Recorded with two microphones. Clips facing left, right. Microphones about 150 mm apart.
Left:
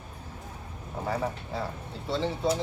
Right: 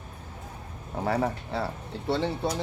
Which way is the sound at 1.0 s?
70° right (ahead or behind).